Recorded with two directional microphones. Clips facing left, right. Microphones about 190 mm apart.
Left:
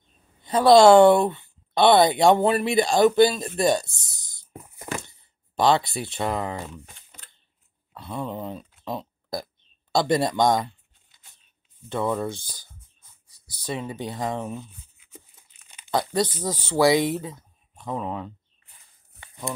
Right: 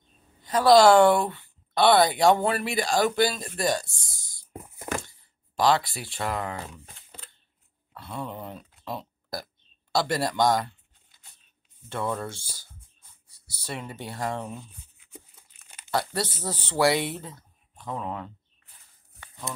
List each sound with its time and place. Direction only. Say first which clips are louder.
0.4 s speech: left 3 dB; 25° left (ahead or behind)
5.0 s speech: left 1 dB; 25° left (ahead or behind)
7.9 s speech: left 4 dB; 20° left (ahead or behind)
11.9 s speech: left 5 dB; 15° left (ahead or behind)
15.9 s speech: left 4 dB; 15° left (ahead or behind)